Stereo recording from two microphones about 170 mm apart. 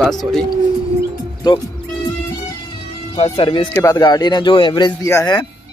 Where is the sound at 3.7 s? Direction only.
15° left (ahead or behind).